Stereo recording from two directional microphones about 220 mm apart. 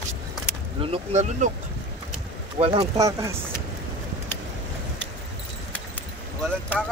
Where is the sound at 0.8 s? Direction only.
30° right (ahead or behind).